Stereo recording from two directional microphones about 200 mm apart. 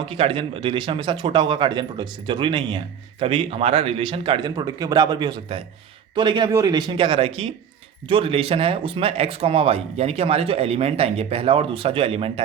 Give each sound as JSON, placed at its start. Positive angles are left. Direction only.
{"t": 0.1, "sound": "a man's voice", "side_deg": -25}